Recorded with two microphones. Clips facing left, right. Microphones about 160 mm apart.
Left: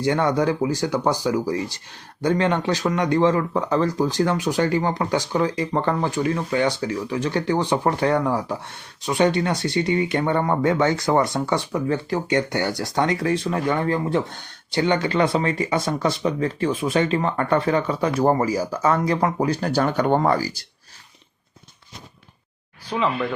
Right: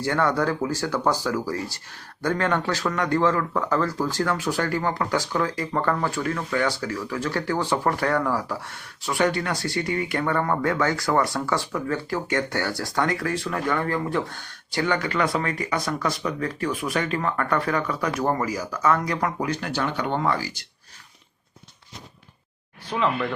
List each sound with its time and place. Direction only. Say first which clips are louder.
0.0 s speech: left 3 dB; 20° left (ahead or behind); by 20.7 s 40° left (ahead or behind)
22.9 s speech: left 1 dB; centre (ahead or behind)